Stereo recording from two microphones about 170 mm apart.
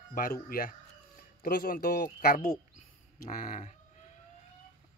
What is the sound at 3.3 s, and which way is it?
Speech, 50° left (ahead or behind).